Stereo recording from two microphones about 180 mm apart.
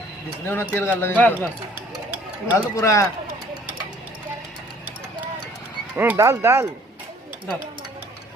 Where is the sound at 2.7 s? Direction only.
15° left (ahead or behind).